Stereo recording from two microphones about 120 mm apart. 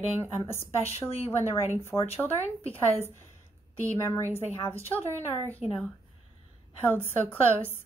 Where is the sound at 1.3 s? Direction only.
20° left (ahead or behind).